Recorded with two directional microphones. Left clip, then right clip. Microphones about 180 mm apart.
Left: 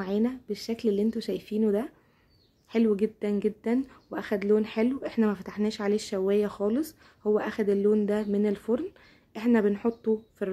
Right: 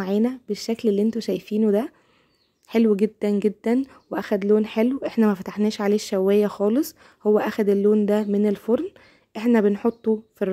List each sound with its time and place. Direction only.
0.0 s speech: 35° right (ahead or behind)